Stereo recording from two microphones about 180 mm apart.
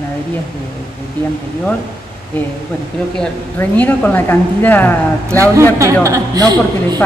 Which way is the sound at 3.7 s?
10° left (ahead or behind).